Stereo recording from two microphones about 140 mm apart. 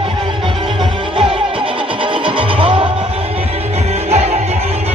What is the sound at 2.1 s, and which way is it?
Music, 40° right (ahead or behind).